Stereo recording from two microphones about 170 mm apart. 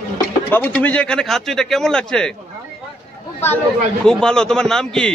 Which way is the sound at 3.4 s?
10° left (ahead or behind).